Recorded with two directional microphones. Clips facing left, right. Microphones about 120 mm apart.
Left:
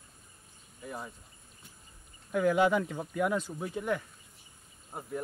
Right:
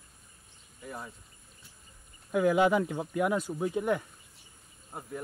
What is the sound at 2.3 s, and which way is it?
Speech, 15° right (ahead or behind).